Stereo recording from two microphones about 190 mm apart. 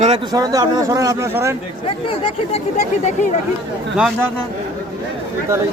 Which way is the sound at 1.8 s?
30° left (ahead or behind).